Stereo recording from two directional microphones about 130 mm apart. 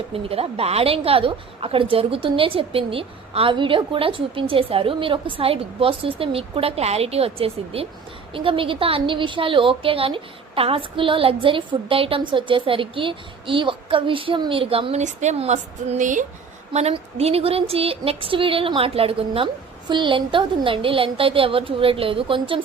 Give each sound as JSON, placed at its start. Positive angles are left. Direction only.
{"t": 0.1, "sound": "a woman's voice", "side_deg": -50}
{"t": 15.0, "sound": "speech", "side_deg": -65}
{"t": 16.7, "sound": "a woman's voice", "side_deg": -55}